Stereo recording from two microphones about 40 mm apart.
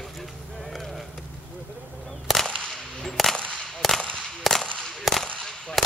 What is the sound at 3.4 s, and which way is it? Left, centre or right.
Whip, left.